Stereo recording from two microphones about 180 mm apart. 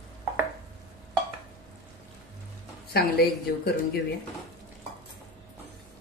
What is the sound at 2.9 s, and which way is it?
Speech, 60° left (ahead or behind).